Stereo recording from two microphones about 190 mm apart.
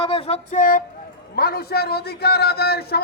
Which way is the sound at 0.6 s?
45° left (ahead or behind).